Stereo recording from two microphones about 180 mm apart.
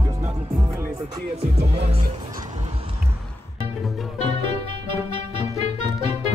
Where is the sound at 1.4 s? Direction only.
35° right (ahead or behind).